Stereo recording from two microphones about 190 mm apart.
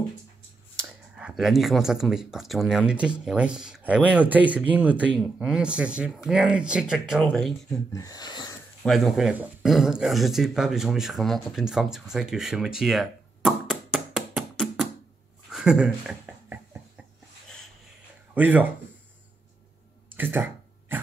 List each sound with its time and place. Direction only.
1.1 s speech: centre (ahead or behind)
7.9 s speech: 20° left (ahead or behind)
8.8 s speech: centre (ahead or behind)
15.5 s a sound: 5° right (ahead or behind)
18.3 s speech: 10° right (ahead or behind)
20.1 s a sound: 10° right (ahead or behind)